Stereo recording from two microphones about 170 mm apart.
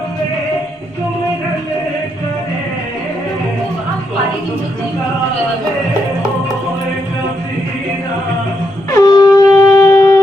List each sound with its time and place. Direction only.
8.9 s wind instrument: 20° left (ahead or behind)